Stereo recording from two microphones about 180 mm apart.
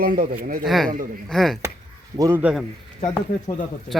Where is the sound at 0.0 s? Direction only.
55° right (ahead or behind).